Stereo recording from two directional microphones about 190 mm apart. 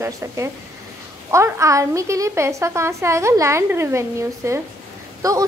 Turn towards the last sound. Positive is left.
turn(degrees=-15)  # may be behind; listen again after turning